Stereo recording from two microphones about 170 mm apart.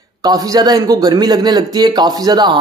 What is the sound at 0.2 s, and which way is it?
Speech, 25° right (ahead or behind).